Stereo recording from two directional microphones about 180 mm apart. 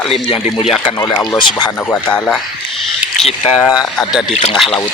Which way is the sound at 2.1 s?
10° left (ahead or behind).